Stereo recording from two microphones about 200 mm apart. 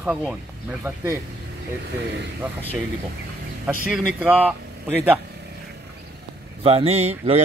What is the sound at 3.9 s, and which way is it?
Speech, 5° right (ahead or behind).